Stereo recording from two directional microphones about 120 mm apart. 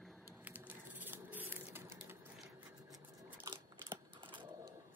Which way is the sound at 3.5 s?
40° right (ahead or behind).